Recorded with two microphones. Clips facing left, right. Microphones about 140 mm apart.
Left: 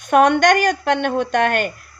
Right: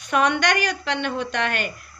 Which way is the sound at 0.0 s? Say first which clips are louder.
Left 7 dB; 50° left (ahead or behind).